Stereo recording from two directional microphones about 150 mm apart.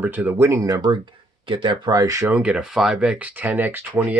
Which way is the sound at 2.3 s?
10° right (ahead or behind).